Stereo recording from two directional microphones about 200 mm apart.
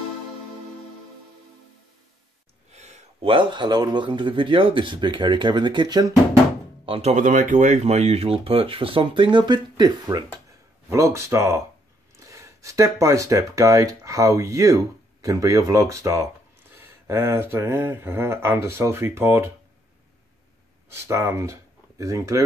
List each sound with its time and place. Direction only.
2.7 s speech: 35° right (ahead or behind)
6.9 s speech: 30° right (ahead or behind); by 19.5 s 10° right (ahead or behind)
20.9 s speech: 15° right (ahead or behind)